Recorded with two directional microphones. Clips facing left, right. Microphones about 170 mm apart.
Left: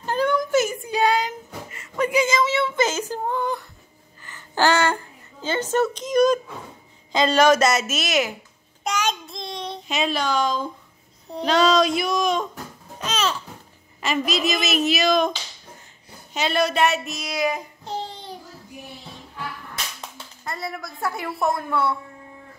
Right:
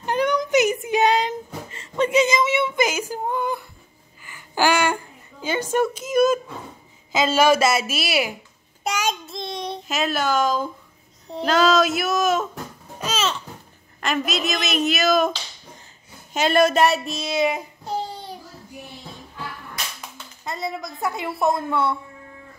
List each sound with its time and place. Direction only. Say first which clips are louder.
0.0 s a sound: even; 15° right (ahead or behind)
7.1 s a woman's voice: left 1 dB; 5° right (ahead or behind)
8.8 s child singing: even; 10° right (ahead or behind)
9.9 s a woman's voice: right 1 dB; 5° right (ahead or behind)
13.0 s babbling: even; 5° right (ahead or behind)
14.0 s a woman's voice: left 1 dB; centre (ahead or behind)
16.3 s child singing: right 4 dB; 50° right (ahead or behind); by 17.6 s 25° right (ahead or behind)
20.4 s a woman's voice: right 3 dB; 20° right (ahead or behind)